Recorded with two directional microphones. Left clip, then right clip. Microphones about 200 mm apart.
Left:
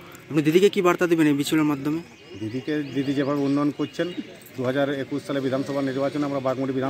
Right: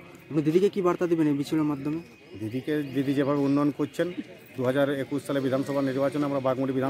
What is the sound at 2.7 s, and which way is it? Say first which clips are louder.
Speech: left 1 dB; 30° right (ahead or behind).